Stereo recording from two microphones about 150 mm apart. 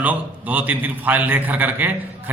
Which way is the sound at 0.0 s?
10° right (ahead or behind).